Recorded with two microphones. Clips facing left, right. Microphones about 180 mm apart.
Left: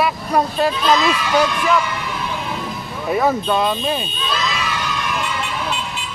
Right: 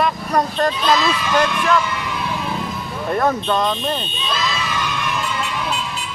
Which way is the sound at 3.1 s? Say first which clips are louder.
Left 1 dB; 5° left (ahead or behind).